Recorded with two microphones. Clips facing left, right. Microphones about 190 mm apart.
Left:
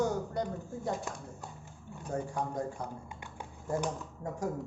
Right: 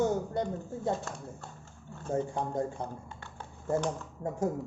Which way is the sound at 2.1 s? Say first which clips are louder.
Right 3 dB; 25° right (ahead or behind).